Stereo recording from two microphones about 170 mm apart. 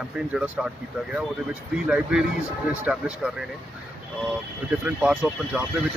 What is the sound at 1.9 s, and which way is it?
Speech, 5° right (ahead or behind).